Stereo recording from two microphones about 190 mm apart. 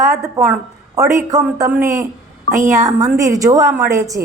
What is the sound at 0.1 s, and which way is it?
Speech, 15° right (ahead or behind).